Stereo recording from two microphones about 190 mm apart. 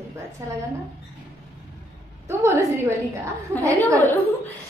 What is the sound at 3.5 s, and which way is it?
Speech, 10° left (ahead or behind).